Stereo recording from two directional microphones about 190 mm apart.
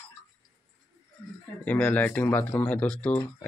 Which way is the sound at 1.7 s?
10° left (ahead or behind).